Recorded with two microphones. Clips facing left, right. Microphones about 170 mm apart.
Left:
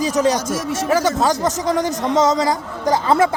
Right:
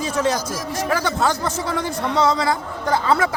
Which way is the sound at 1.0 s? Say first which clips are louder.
Left 4 dB; 40° left (ahead or behind).